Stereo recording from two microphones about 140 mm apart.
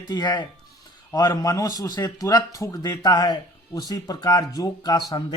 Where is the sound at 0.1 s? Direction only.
30° left (ahead or behind).